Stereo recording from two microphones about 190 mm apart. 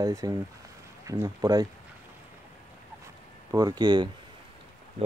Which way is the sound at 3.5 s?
20° right (ahead or behind).